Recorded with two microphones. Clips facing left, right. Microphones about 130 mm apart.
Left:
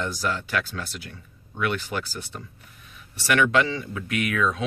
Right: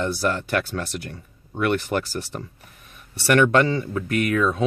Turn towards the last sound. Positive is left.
turn(degrees=-40)  # may be behind; listen again after turning